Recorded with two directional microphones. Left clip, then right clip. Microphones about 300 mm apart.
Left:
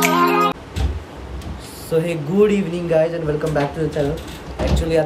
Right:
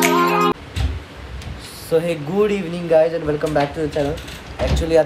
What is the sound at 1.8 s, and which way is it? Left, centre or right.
A man's voice, centre.